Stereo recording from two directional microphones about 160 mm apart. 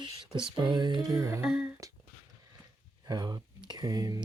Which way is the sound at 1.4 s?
5° right (ahead or behind).